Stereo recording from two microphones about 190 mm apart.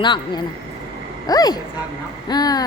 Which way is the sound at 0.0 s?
25° left (ahead or behind).